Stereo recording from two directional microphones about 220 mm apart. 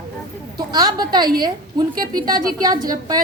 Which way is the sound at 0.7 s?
20° right (ahead or behind).